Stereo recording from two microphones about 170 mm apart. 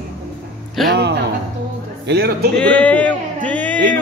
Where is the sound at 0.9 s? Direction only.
80° right.